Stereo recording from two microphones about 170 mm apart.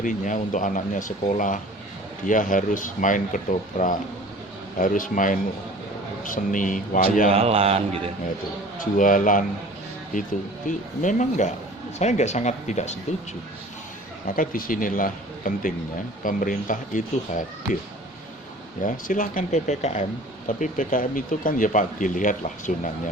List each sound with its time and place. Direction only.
0.0 s speech: 50° left (ahead or behind)
7.3 s a man's voice: 35° right (ahead or behind)
8.8 s speech: 50° left (ahead or behind)
10.7 s speech: 50° left (ahead or behind)
14.3 s speech: 55° left (ahead or behind)
18.8 s speech: 50° left (ahead or behind)